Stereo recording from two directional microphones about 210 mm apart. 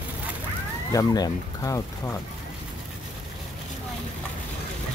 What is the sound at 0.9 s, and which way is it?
Speech, 15° left (ahead or behind).